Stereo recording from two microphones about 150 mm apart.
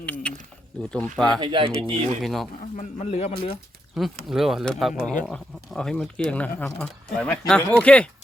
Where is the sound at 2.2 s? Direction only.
Centre (ahead or behind).